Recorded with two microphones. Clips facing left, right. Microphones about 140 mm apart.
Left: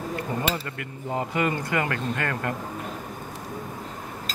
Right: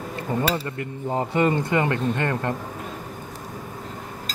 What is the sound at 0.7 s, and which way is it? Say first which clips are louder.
Speech: right 4 dB; 30° right (ahead or behind).